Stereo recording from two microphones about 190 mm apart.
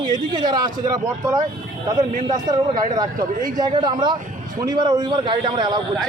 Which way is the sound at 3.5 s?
25° right (ahead or behind).